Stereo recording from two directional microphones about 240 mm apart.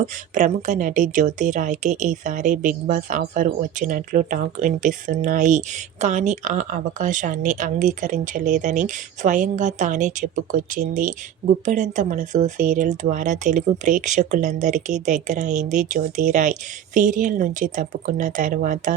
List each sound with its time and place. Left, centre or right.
0.0 s speech: right